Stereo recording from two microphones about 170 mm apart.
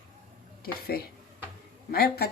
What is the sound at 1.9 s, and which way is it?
Speech, 65° left (ahead or behind).